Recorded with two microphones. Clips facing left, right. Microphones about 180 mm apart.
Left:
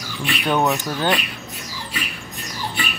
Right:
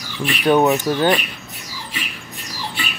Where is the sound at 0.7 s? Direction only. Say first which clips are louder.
Right 5 dB; centre (ahead or behind).